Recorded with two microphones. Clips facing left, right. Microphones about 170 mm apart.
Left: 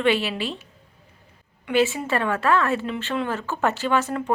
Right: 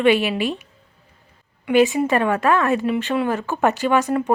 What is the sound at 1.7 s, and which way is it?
A woman's voice, 15° right (ahead or behind).